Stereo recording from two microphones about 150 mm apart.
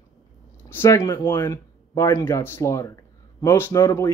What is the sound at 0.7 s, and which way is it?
Speech, 15° left (ahead or behind).